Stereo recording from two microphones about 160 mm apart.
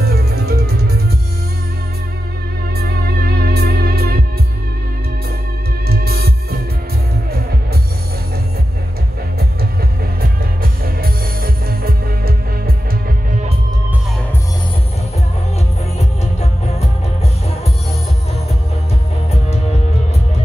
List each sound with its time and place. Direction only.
0.0 s music: 80° right
3.2 s music: 75° right (ahead or behind)
5.9 s music: 70° right (ahead or behind)
10.2 s music: 65° right (ahead or behind)
16.0 s music: 45° left (ahead or behind)